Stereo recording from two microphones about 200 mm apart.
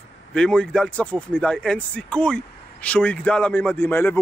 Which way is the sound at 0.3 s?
5° left (ahead or behind).